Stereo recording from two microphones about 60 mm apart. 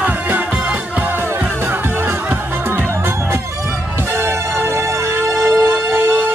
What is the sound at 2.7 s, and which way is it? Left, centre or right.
Music, right.